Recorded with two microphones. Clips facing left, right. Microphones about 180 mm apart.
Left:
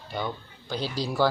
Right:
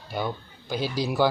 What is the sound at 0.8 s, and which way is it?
Speech, 20° right (ahead or behind).